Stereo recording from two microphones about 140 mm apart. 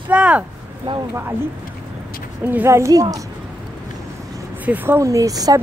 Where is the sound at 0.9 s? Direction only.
35° right (ahead or behind).